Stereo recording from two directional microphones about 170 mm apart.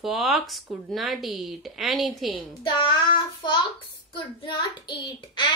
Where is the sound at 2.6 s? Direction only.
25° left (ahead or behind).